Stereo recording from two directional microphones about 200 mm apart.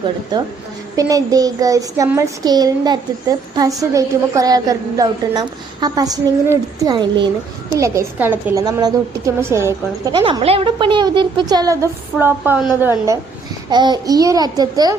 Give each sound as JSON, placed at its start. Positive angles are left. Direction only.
{"t": 0.9, "sound": "a child's voice", "side_deg": -15}
{"t": 12.1, "sound": "a woman's voice", "side_deg": 0}
{"t": 12.8, "sound": "a woman's voice", "side_deg": -10}